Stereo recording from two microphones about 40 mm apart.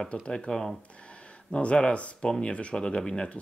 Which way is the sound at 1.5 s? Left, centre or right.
Left.